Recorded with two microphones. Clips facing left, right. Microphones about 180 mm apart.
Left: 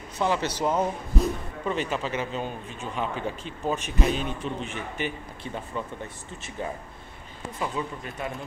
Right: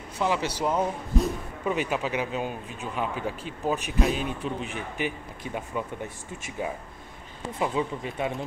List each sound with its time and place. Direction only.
0.2 s speech: 5° right (ahead or behind)
7.5 s speech: 15° right (ahead or behind)